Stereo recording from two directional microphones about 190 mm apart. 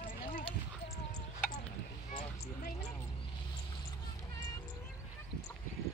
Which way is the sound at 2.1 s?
45° left (ahead or behind).